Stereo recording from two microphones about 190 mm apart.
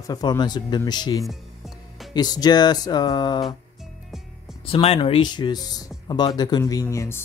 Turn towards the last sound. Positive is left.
turn(degrees=15)  # may be behind; listen again after turning